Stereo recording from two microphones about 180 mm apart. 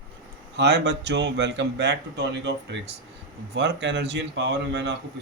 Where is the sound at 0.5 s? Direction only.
70° right (ahead or behind).